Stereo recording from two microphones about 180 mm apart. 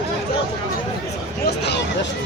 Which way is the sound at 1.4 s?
70° left (ahead or behind).